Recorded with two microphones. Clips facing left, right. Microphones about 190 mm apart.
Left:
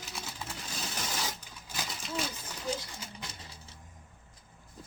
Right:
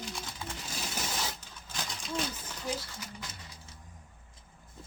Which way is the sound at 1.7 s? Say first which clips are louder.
Right 1 dB; 5° left (ahead or behind).